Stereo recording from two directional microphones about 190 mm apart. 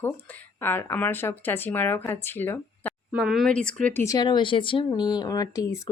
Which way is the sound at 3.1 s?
5° right (ahead or behind).